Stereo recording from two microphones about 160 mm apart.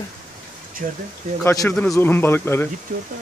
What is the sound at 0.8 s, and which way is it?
Speech, 60° right (ahead or behind).